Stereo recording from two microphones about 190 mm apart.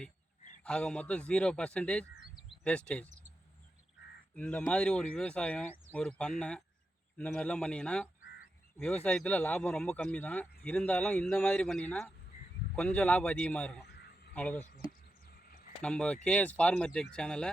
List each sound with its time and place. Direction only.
0.6 s speech: 5° left (ahead or behind)
4.4 s speech: 5° left (ahead or behind)
15.4 s a sound: 50° left (ahead or behind)
15.8 s speech: 5° left (ahead or behind)